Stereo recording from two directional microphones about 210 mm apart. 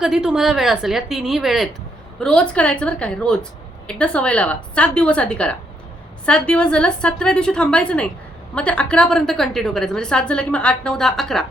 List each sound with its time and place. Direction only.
0.0 s a woman's voice: 5° right (ahead or behind)